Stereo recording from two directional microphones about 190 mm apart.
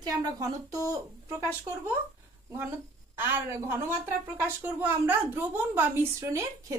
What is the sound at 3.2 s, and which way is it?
Speech, 10° right (ahead or behind).